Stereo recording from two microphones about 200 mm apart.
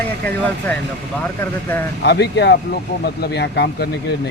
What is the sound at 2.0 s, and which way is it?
Speech, 55° left (ahead or behind).